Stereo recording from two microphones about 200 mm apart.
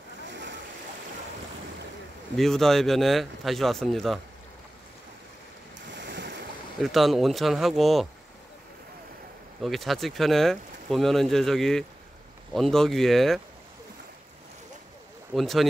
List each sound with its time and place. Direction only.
0.3 s splash: 65° right (ahead or behind)
2.3 s speech: centre (ahead or behind)
5.9 s waves: 65° right (ahead or behind)
6.8 s speech: centre (ahead or behind)
9.6 s speech: centre (ahead or behind)
15.3 s speech: centre (ahead or behind)